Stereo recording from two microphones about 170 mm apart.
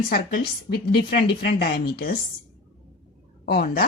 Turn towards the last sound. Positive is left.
turn(degrees=60)  # may be behind; listen again after turning